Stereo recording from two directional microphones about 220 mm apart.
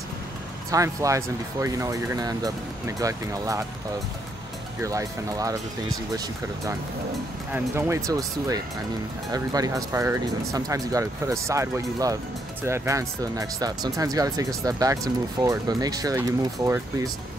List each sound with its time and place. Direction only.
0.7 s speech: 15° right (ahead or behind)
4.8 s speech: 15° right (ahead or behind)